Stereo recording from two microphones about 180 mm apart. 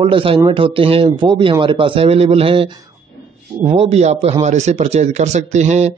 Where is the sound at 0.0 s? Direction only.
30° right (ahead or behind).